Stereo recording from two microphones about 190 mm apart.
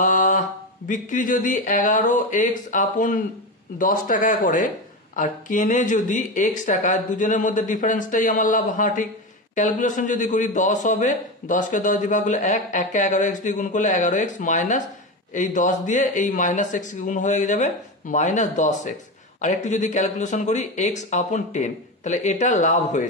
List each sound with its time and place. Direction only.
0.0 s mantra: 40° left (ahead or behind)
0.8 s a man's voice: 45° left (ahead or behind)